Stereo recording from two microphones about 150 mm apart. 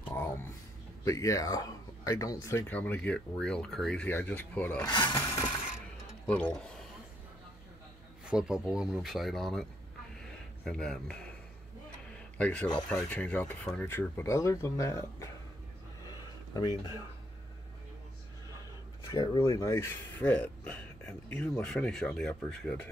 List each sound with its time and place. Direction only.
0.0 s a sound: 15° left (ahead or behind)
1.0 s speech: 20° left (ahead or behind)
4.9 s speech: 30° left (ahead or behind)
6.2 s speech: 10° left (ahead or behind)
8.3 s speech: 5° right (ahead or behind)
12.4 s speech: 10° left (ahead or behind)
16.1 s a sound: 25° left (ahead or behind)
19.1 s speech: 25° left (ahead or behind); by 22.8 s 5° left (ahead or behind)